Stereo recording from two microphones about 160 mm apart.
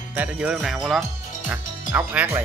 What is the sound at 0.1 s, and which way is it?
Speech, 10° right (ahead or behind).